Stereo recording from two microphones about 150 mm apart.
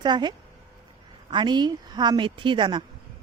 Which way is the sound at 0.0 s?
30° right (ahead or behind).